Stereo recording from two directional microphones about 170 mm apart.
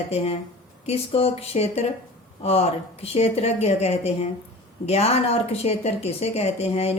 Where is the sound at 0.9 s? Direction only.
35° left (ahead or behind).